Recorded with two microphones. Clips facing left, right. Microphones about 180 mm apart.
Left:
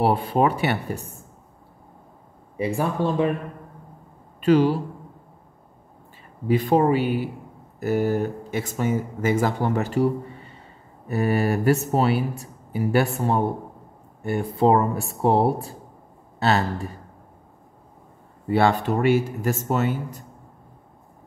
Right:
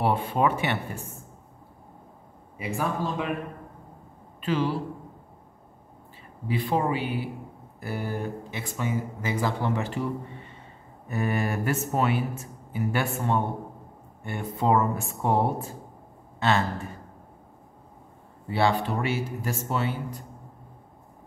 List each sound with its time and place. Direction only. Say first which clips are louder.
0.0 s speech: left 4 dB; 35° left (ahead or behind)
2.5 s speech: left 5 dB; 35° left (ahead or behind)
4.4 s a man's voice: left 9 dB; 45° left (ahead or behind)
6.4 s speech: left 7 dB; 40° left (ahead or behind)
11.1 s speech: left 6 dB; 35° left (ahead or behind)
18.5 s speech: left 5 dB; 45° left (ahead or behind)